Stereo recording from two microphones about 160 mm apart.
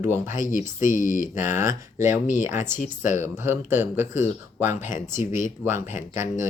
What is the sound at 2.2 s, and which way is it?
Speech, 50° left (ahead or behind).